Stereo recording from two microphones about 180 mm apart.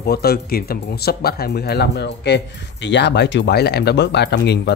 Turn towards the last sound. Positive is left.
turn(degrees=70)  # may be behind; listen again after turning